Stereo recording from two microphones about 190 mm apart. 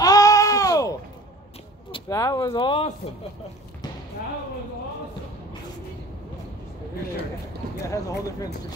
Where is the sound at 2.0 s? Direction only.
15° left (ahead or behind).